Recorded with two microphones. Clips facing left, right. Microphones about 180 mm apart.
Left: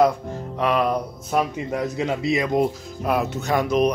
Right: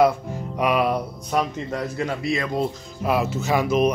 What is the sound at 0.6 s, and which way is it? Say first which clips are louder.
Music: even; 10° right (ahead or behind).